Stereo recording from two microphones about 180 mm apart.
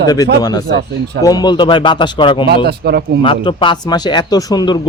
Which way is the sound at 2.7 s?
65° right (ahead or behind).